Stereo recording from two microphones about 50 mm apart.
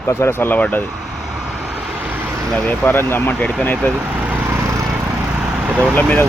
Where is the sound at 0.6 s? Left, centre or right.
Left.